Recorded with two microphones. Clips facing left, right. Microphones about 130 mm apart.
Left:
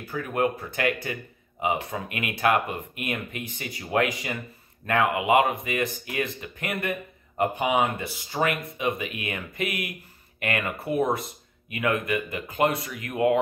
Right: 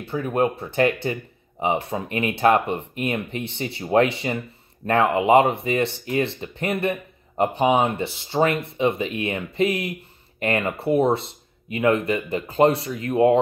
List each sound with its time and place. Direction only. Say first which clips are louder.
0.0 s speech: right 4 dB; 25° right (ahead or behind)